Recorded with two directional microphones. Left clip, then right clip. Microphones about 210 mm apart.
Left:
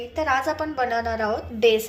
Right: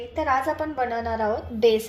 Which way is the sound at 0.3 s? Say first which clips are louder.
Even; 10° right (ahead or behind).